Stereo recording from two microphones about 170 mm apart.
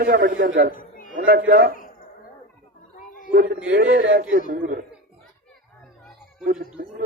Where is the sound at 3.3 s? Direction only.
60° right (ahead or behind).